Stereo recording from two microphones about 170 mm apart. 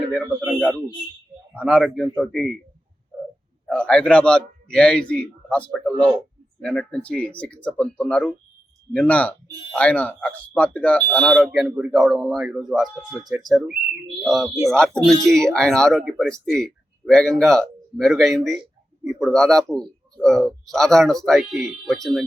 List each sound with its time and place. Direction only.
0.1 s speech: centre (ahead or behind)
3.8 s a man's voice: 5° left (ahead or behind)